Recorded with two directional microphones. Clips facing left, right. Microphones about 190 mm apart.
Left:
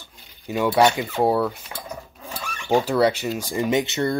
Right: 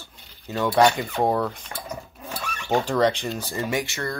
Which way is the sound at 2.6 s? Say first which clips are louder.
Left 2 dB; 5° left (ahead or behind).